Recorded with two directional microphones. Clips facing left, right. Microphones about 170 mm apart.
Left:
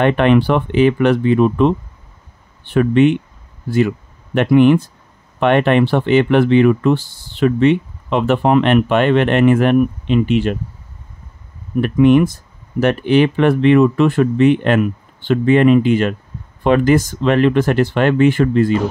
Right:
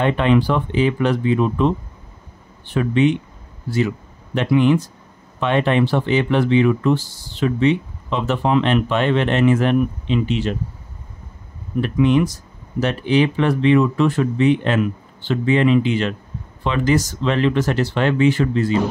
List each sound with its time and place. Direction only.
0.0 s speech: 65° left (ahead or behind)
11.8 s speech: 55° left (ahead or behind)